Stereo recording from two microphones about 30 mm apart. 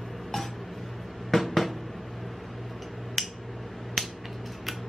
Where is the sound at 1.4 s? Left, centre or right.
Centre.